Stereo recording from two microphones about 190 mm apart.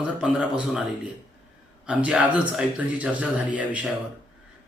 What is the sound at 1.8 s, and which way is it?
Speech, 5° right (ahead or behind).